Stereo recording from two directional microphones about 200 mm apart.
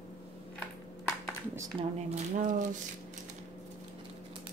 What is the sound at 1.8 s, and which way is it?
Speech, 35° right (ahead or behind).